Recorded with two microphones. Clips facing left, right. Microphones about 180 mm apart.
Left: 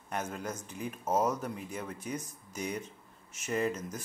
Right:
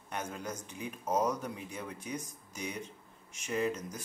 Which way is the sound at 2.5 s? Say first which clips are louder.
Left 4 dB; 45° left (ahead or behind).